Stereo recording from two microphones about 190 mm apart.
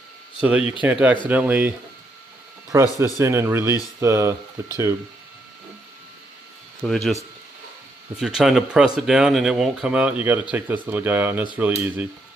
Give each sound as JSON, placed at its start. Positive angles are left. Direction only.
{"t": 0.4, "sound": "speech", "side_deg": -10}
{"t": 2.7, "sound": "speech", "side_deg": -15}
{"t": 6.8, "sound": "speech", "side_deg": 0}
{"t": 8.2, "sound": "speech", "side_deg": -5}